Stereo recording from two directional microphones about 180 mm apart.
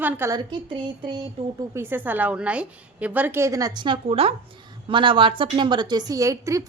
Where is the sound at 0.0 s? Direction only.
10° right (ahead or behind).